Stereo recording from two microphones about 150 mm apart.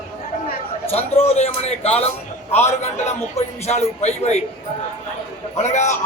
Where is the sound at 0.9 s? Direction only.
40° left (ahead or behind).